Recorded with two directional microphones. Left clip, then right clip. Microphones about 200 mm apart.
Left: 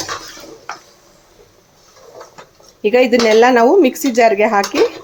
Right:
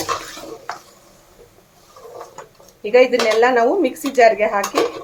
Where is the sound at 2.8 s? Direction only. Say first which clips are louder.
Left 2 dB; 45° left (ahead or behind).